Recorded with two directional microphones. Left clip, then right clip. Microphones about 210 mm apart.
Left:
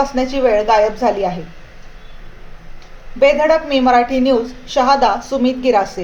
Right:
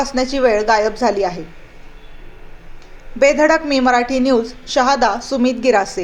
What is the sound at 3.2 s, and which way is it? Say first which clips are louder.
Speech: left 1 dB; 35° right (ahead or behind).